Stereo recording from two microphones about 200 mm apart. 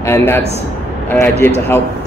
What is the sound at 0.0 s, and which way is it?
A man's voice, 10° left (ahead or behind).